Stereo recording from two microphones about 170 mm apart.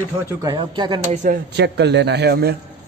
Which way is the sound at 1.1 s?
50° right (ahead or behind).